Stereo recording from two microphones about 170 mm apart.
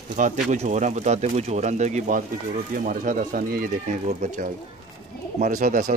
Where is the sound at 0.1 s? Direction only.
45° right (ahead or behind).